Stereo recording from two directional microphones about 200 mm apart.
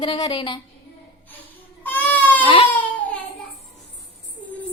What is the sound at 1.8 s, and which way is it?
Baby cry, 10° left (ahead or behind).